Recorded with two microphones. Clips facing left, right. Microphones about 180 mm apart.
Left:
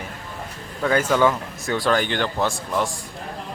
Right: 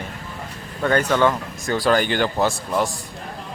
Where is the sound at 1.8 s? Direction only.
5° right (ahead or behind).